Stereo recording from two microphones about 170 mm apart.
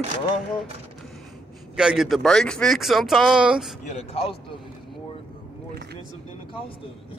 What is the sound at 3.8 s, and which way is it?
Speech, 35° left (ahead or behind).